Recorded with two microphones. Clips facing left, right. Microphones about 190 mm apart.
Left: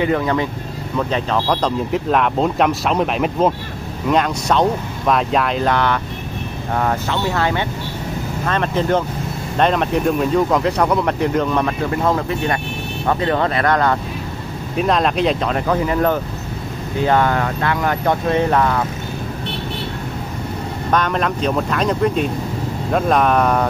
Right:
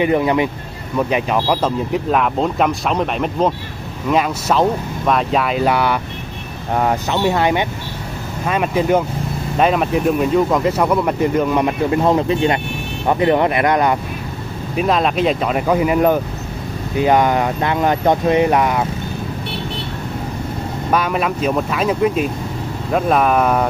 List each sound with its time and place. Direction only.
0.0 s speech: 20° right (ahead or behind)
14.8 s speech: centre (ahead or behind)
20.9 s speech: 10° right (ahead or behind)